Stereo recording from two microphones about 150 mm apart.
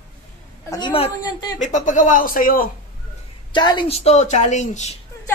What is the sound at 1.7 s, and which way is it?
A man's voice, 55° left (ahead or behind).